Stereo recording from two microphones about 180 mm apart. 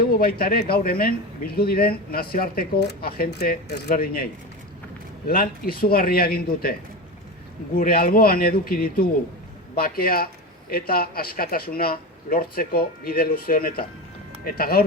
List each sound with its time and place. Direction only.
0.0 s speech: 55° left (ahead or behind)
7.8 s speech: 55° left (ahead or behind)